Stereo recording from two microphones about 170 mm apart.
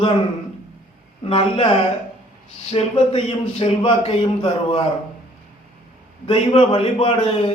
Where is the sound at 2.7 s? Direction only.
35° left (ahead or behind).